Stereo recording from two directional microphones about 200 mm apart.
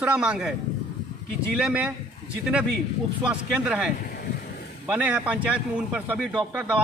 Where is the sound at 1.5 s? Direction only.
5° right (ahead or behind).